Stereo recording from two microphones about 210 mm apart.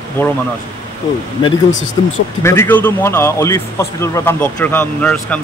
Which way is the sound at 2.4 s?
10° left (ahead or behind).